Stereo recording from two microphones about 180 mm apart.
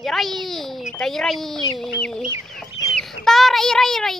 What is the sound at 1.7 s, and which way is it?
Chicken, centre (ahead or behind).